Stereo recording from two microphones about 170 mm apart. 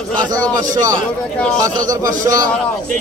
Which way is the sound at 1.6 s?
20° right (ahead or behind).